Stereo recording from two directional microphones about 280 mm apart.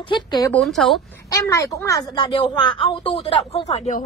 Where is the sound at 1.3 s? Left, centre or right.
Centre.